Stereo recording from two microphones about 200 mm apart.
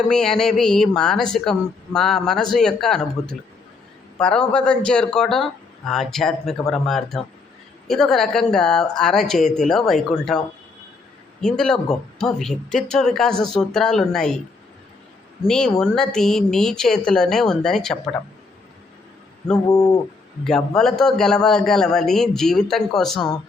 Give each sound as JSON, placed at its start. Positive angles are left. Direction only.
{"t": 0.1, "sound": "speech", "side_deg": 5}
{"t": 15.4, "sound": "speech", "side_deg": 5}
{"t": 19.6, "sound": "speech", "side_deg": 20}
{"t": 20.4, "sound": "speech", "side_deg": 5}